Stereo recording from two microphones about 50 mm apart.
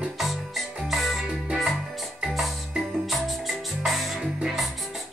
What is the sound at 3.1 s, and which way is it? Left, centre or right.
Music, centre.